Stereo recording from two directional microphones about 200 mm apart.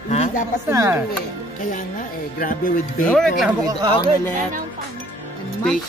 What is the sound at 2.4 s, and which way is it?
Music, 45° left (ahead or behind).